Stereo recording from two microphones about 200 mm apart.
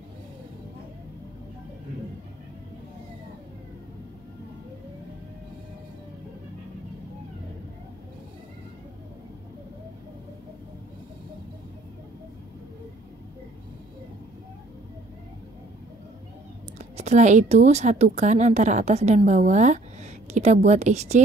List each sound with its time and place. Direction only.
16.7 s a woman's voice: 35° right (ahead or behind)